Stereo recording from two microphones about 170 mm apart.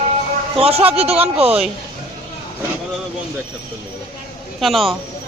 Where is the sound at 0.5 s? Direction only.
35° right (ahead or behind).